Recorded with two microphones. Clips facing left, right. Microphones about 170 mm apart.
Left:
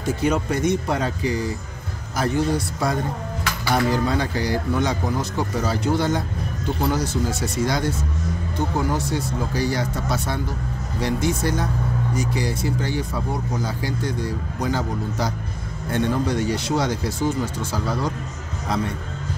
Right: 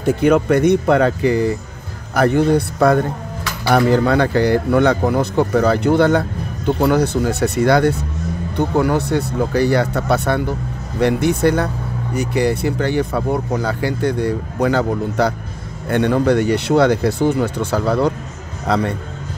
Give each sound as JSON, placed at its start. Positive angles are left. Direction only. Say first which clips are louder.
{"t": 0.0, "sound": "a man's voice", "louder": "right 8 dB", "side_deg": -60}